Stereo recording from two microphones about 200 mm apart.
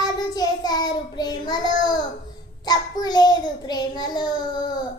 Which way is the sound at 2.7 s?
20° left (ahead or behind).